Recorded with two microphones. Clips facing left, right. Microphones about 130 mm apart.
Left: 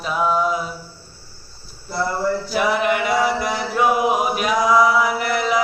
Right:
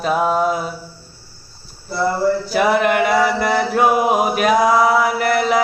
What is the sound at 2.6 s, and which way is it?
Chant, 50° right (ahead or behind).